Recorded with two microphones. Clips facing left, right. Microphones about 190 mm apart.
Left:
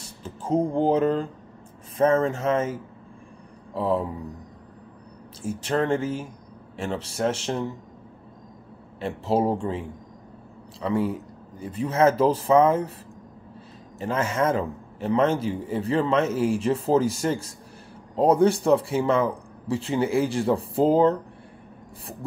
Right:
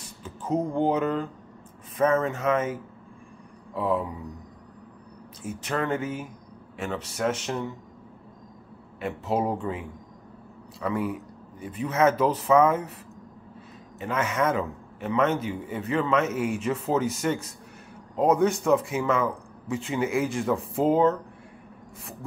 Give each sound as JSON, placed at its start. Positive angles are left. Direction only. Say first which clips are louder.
{"t": 0.2, "sound": "speech", "louder": "left 3 dB", "side_deg": 30}
{"t": 3.7, "sound": "a man's voice", "louder": "left 2 dB", "side_deg": 30}
{"t": 5.4, "sound": "speech", "louder": "left 4 dB", "side_deg": 30}
{"t": 9.0, "sound": "a man's voice", "louder": "left 3 dB", "side_deg": 30}
{"t": 13.9, "sound": "a man's voice", "louder": "left 2 dB", "side_deg": 30}